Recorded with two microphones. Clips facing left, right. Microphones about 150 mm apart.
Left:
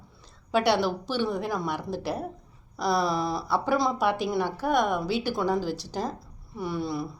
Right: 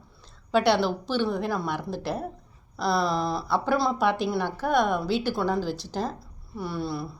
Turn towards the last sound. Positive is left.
turn(degrees=15)  # may be behind; listen again after turning